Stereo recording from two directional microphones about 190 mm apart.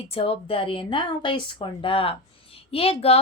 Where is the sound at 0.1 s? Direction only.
30° left (ahead or behind).